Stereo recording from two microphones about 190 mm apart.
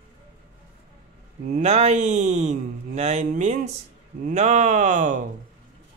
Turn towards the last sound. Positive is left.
turn(degrees=-40)  # may be behind; listen again after turning